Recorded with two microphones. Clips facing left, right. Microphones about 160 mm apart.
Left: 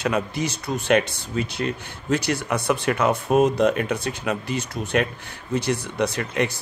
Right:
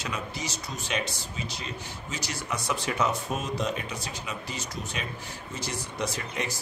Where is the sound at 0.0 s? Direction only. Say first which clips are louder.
Left 10 dB; 60° left (ahead or behind).